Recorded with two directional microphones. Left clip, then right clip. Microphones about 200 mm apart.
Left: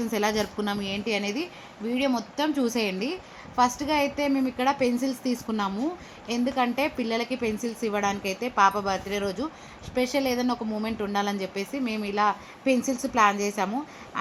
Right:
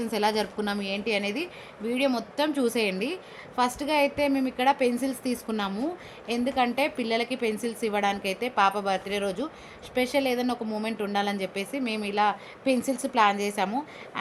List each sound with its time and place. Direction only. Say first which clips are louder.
0.0 s a woman's voice: even; centre (ahead or behind)